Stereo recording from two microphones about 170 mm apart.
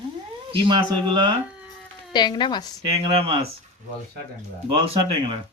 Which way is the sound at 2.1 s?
25° left (ahead or behind).